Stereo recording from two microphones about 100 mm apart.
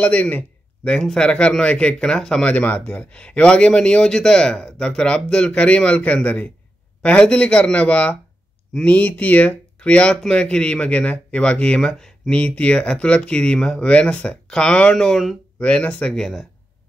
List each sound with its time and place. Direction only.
0.0 s speech: 15° left (ahead or behind)